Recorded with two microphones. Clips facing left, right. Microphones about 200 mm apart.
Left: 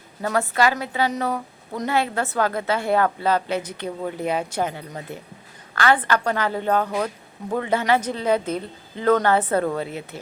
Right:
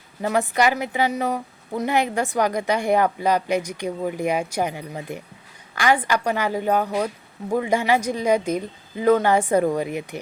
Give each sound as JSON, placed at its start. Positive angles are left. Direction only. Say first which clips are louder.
{"t": 0.2, "sound": "a woman's voice", "louder": "right 1 dB", "side_deg": -15}